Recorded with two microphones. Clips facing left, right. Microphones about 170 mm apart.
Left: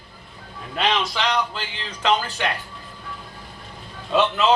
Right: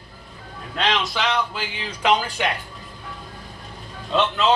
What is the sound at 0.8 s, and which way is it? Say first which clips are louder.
Speech: even; centre (ahead or behind).